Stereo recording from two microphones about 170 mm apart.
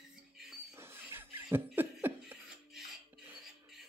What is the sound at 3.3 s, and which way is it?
Music, centre (ahead or behind).